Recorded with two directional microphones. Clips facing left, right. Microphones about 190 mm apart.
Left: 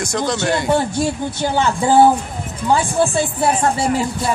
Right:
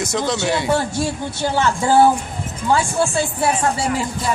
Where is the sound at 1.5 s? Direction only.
15° left (ahead or behind).